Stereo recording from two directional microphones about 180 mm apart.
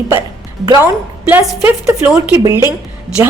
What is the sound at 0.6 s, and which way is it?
A woman's voice, 20° right (ahead or behind).